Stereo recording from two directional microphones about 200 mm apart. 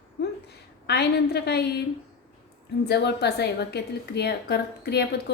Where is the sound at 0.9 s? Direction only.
55° left (ahead or behind).